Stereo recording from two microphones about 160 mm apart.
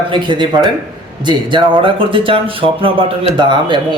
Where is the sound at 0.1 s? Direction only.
30° right (ahead or behind).